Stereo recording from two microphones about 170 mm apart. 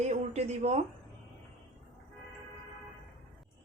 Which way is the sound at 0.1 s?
40° right (ahead or behind).